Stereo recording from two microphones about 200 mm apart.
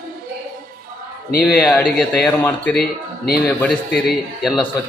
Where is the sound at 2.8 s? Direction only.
50° left (ahead or behind).